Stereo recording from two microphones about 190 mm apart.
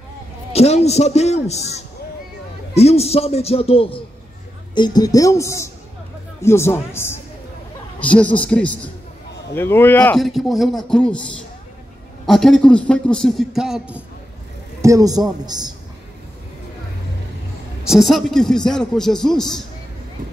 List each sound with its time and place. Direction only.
0.5 s a man's voice: 35° left (ahead or behind); by 14.0 s 5° right (ahead or behind)
14.8 s a man's voice: 15° right (ahead or behind)
17.8 s a man's voice: centre (ahead or behind)